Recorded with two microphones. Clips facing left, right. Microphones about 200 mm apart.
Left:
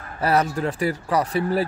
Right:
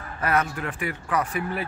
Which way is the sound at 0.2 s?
35° left (ahead or behind).